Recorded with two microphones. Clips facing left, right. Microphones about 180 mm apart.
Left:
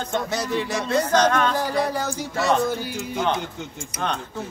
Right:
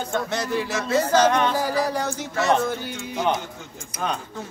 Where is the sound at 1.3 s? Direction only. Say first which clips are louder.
Even; 15° right (ahead or behind).